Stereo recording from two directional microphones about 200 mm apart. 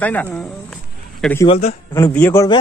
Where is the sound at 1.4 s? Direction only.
30° left (ahead or behind).